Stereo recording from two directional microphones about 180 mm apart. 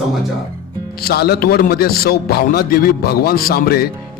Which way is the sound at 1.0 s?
60° left (ahead or behind).